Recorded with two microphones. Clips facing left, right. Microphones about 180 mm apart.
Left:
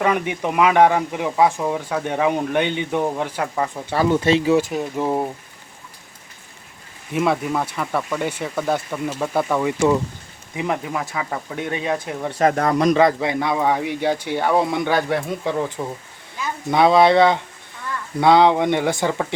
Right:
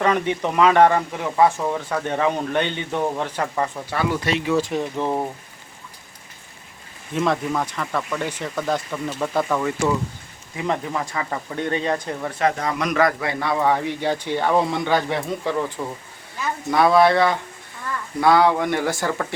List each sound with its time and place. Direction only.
0.0 s speech: 10° left (ahead or behind)
4.1 s speech: 25° left (ahead or behind)
4.7 s speech: 5° left (ahead or behind)
7.1 s speech: 10° left (ahead or behind)
12.4 s speech: 50° left (ahead or behind)
12.8 s speech: 30° left (ahead or behind); by 15.6 s 10° left (ahead or behind)
16.7 s speech: 20° left (ahead or behind)